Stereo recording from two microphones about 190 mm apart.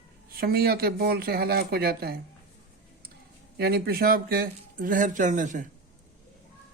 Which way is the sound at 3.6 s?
55° right (ahead or behind).